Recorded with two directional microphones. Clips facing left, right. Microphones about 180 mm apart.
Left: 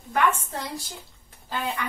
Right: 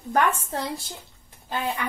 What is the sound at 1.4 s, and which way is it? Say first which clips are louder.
Speech: right 2 dB; 20° right (ahead or behind).